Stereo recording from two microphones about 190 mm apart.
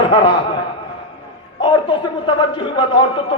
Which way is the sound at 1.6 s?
25° left (ahead or behind).